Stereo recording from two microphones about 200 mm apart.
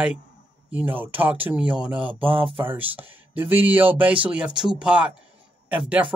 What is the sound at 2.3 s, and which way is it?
Speech, 25° right (ahead or behind).